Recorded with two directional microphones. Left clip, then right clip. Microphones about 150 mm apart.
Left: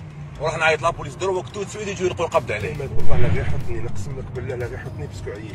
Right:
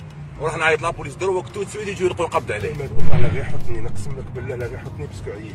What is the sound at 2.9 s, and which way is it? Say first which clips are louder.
Speech: even; centre (ahead or behind).